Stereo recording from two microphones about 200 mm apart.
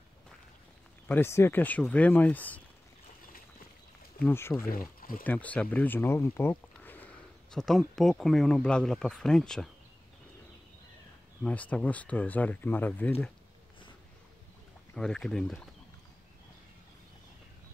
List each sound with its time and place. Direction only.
1.0 s speech: 10° left (ahead or behind)
4.2 s speech: 10° left (ahead or behind)
4.6 s speech: 45° left (ahead or behind)
5.2 s speech: 10° left (ahead or behind)
11.4 s speech: 5° left (ahead or behind)
15.0 s speech: 5° left (ahead or behind)